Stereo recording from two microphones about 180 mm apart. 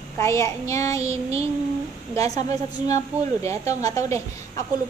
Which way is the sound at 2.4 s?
20° left (ahead or behind).